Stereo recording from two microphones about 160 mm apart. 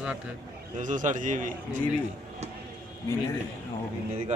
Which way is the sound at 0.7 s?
55° right (ahead or behind).